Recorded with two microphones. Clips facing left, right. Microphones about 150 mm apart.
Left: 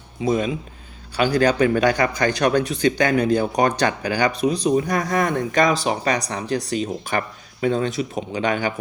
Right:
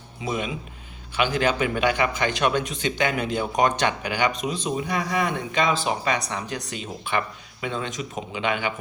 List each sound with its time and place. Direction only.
0.3 s speech: 40° left (ahead or behind)